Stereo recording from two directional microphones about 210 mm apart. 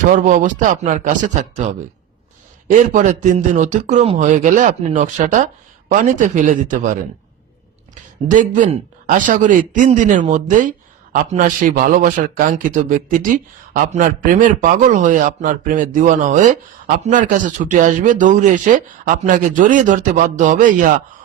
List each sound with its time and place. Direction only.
0.1 s a man's voice: 40° right (ahead or behind)
2.6 s a man's voice: 35° right (ahead or behind)
8.3 s a man's voice: 35° right (ahead or behind)